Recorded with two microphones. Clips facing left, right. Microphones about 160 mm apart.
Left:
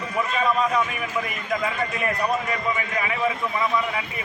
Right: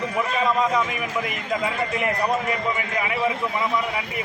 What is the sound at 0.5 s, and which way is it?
A man's voice, 15° right (ahead or behind).